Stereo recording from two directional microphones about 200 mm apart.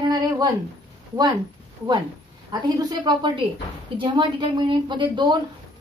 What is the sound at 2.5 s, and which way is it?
A woman's voice, 20° right (ahead or behind).